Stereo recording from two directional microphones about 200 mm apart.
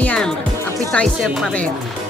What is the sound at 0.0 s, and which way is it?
Music, 5° left (ahead or behind).